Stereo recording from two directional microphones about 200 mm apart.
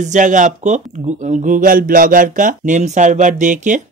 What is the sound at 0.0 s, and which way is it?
Speech, 35° right (ahead or behind).